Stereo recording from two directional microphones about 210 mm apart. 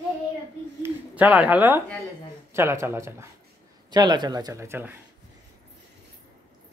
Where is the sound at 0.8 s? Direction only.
5° right (ahead or behind).